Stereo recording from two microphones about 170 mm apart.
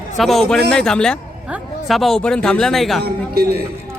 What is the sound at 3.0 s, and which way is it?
Speech, 65° right (ahead or behind).